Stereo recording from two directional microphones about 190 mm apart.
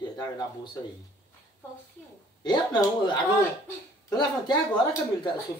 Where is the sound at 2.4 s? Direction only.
20° left (ahead or behind).